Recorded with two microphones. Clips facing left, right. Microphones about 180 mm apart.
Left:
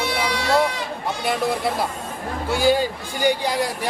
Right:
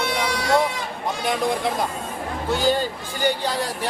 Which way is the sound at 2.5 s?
10° left (ahead or behind).